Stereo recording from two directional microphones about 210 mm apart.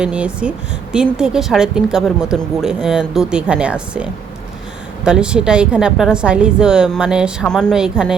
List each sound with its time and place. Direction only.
0.0 s speech: 5° right (ahead or behind)